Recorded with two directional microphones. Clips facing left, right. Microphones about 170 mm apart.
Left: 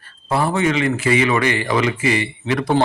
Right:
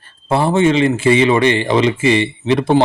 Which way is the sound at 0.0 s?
25° right (ahead or behind).